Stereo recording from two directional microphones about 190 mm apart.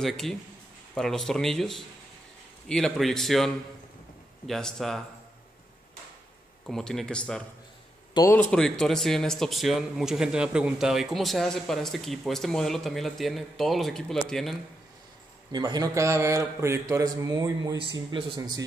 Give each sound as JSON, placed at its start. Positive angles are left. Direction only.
{"t": 0.0, "sound": "speech", "side_deg": 0}
{"t": 6.6, "sound": "speech", "side_deg": 5}
{"t": 8.1, "sound": "speech", "side_deg": 20}
{"t": 8.4, "sound": "speech", "side_deg": 5}
{"t": 15.5, "sound": "a man's voice", "side_deg": -20}